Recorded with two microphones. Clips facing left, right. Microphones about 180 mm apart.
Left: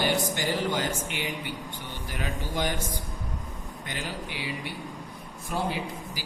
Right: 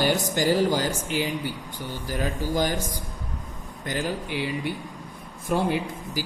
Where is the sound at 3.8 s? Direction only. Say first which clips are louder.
Right 8 dB; 40° right (ahead or behind).